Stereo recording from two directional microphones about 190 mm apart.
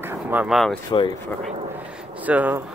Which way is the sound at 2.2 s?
10° right (ahead or behind).